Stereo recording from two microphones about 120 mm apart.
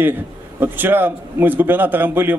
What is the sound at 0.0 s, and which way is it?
Speech, 15° right (ahead or behind).